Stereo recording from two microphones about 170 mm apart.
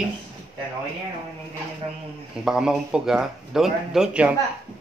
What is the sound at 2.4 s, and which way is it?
Speech, 5° right (ahead or behind).